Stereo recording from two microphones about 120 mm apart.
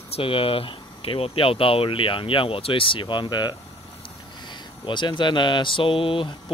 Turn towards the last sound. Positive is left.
turn(degrees=45)  # may be behind; listen again after turning